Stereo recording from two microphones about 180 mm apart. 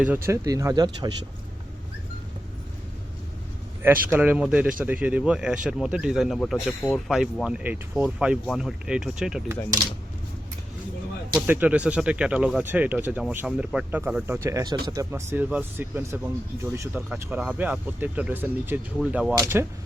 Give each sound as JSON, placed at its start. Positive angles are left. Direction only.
{"t": 0.0, "sound": "speech", "side_deg": -15}
{"t": 4.1, "sound": "speech", "side_deg": -10}
{"t": 11.3, "sound": "speech", "side_deg": -10}
{"t": 17.1, "sound": "speech", "side_deg": -5}
{"t": 19.4, "sound": "speech", "side_deg": -15}